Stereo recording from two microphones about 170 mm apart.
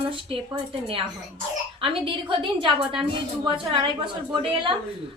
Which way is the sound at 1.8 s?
30° right (ahead or behind).